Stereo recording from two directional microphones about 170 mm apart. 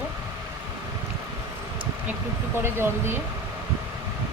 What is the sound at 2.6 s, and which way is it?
Speech, 15° right (ahead or behind).